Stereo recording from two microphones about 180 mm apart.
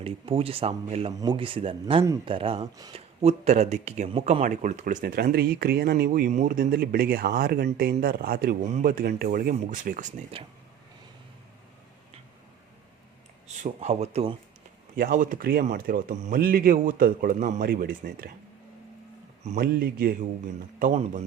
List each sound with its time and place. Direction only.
0.0 s speech: 30° right (ahead or behind)
1.1 s a man's voice: 25° right (ahead or behind); by 8.5 s 55° right (ahead or behind)
8.6 s speech: 40° right (ahead or behind)
8.9 s a man's voice: 55° right (ahead or behind)
13.6 s speech: 40° right (ahead or behind)
14.9 s a man's voice: 55° right (ahead or behind)
19.5 s a man's voice: 55° right (ahead or behind); by 21.2 s 40° right (ahead or behind)